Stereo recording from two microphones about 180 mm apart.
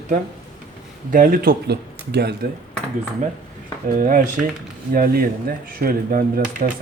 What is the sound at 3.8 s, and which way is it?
Speech, 45° right (ahead or behind).